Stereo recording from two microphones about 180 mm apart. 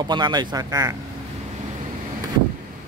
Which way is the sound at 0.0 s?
25° right (ahead or behind).